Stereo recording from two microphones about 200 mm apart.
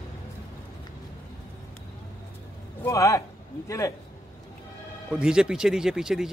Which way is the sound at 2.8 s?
15° left (ahead or behind).